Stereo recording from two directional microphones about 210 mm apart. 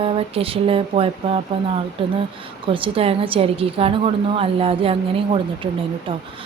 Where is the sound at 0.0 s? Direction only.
25° right (ahead or behind).